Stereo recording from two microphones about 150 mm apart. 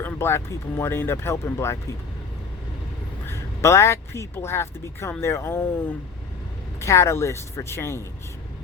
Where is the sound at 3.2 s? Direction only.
20° left (ahead or behind).